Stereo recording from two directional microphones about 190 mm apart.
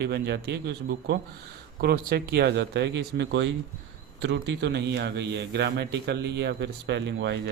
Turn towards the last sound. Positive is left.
turn(degrees=-65)  # may be behind; listen again after turning